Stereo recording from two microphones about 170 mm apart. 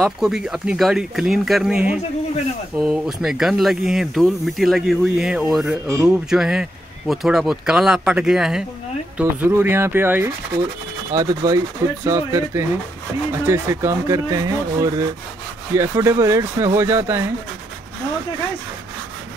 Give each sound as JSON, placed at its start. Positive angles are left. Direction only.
{"t": 0.0, "sound": "speech", "side_deg": -5}